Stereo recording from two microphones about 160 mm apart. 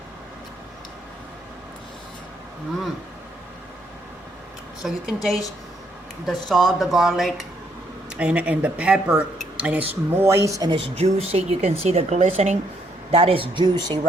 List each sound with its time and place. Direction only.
4.8 s speech: centre (ahead or behind); by 10.8 s 25° right (ahead or behind)
10.9 s speech: 40° right (ahead or behind)